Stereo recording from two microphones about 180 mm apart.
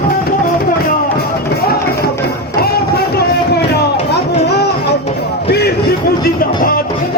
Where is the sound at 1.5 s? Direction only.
60° left (ahead or behind).